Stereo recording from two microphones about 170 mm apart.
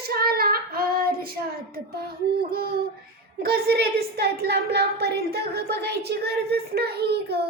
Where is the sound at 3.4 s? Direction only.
70° right (ahead or behind).